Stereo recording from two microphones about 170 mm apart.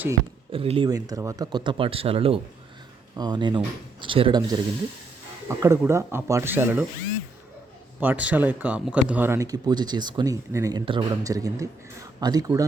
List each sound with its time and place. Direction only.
0.5 s speech: 35° right (ahead or behind)
0.9 s speech: 20° right (ahead or behind)
8.0 s speech: 10° right (ahead or behind)